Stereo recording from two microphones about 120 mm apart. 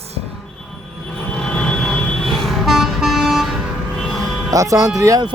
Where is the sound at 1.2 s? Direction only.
10° left (ahead or behind).